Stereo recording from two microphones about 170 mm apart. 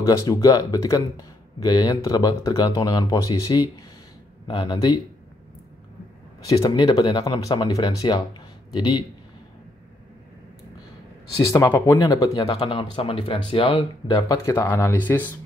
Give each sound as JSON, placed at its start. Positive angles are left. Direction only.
{"t": 0.0, "sound": "speech", "side_deg": 20}
{"t": 6.5, "sound": "speech", "side_deg": 25}
{"t": 11.4, "sound": "speech", "side_deg": 15}